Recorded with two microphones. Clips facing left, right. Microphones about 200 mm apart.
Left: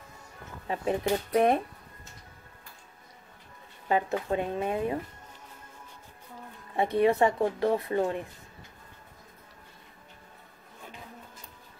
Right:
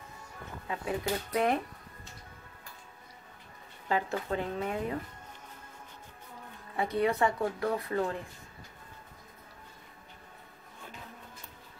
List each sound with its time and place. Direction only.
0.7 s speech: 25° left (ahead or behind)
3.9 s speech: 20° left (ahead or behind)
6.8 s speech: 25° left (ahead or behind)